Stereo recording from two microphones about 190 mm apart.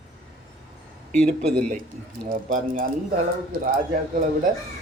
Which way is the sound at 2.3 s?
45° right (ahead or behind).